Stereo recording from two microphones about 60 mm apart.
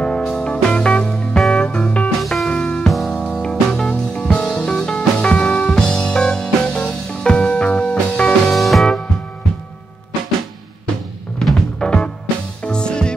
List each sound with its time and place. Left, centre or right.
0.0 s music: centre
2.0 s music: centre
3.1 s music: left
3.3 s music: centre
8.5 s music: centre
11.8 s music: centre